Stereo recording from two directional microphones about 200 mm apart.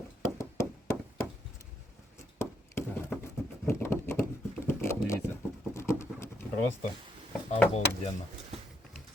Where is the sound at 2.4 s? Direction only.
15° left (ahead or behind).